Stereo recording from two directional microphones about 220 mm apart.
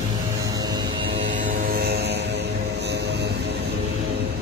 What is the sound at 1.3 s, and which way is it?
Vehicle, 40° right (ahead or behind).